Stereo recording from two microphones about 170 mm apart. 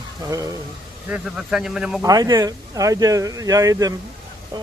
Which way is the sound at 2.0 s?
20° right (ahead or behind).